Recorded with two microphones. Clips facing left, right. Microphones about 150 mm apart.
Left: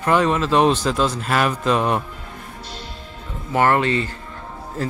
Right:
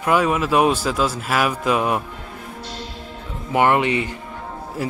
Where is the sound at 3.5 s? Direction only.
15° right (ahead or behind).